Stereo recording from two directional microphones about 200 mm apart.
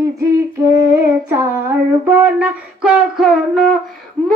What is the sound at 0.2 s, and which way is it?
Humming, 15° right (ahead or behind).